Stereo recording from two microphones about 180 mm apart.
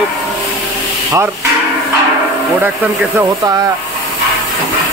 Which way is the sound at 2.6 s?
10° right (ahead or behind).